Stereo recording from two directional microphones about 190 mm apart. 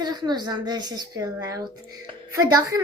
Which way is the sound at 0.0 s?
20° right (ahead or behind).